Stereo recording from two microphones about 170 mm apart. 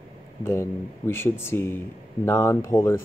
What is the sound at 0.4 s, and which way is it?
Speech, 15° left (ahead or behind).